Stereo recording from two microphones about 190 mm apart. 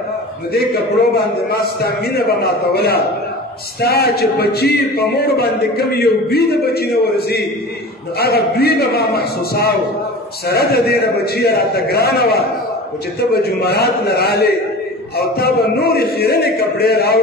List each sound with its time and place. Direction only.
1.5 s a man's voice: 55° left (ahead or behind)